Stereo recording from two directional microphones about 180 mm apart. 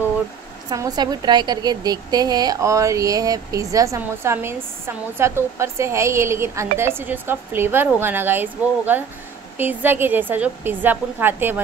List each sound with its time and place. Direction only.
0.7 s a woman's voice: 20° right (ahead or behind)